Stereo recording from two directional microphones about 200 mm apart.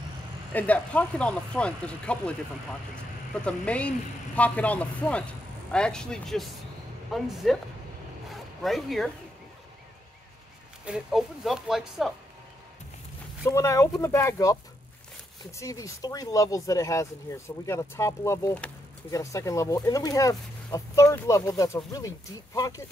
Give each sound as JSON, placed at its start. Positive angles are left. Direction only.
{"t": 0.5, "sound": "speech", "side_deg": 5}
{"t": 3.4, "sound": "speech", "side_deg": 5}
{"t": 8.6, "sound": "speech", "side_deg": 0}
{"t": 10.9, "sound": "speech", "side_deg": 0}
{"t": 13.5, "sound": "speech", "side_deg": 15}